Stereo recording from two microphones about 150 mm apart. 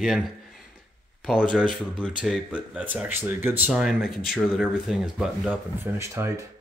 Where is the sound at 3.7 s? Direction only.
5° right (ahead or behind).